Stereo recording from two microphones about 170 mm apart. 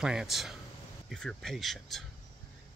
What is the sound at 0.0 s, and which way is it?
Speech, 5° right (ahead or behind).